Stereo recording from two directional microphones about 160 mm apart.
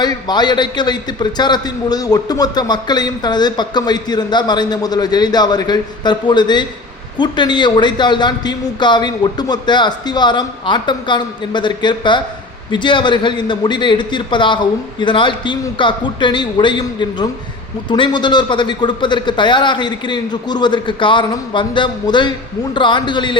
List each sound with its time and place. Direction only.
0.0 s a man's voice: 25° left (ahead or behind)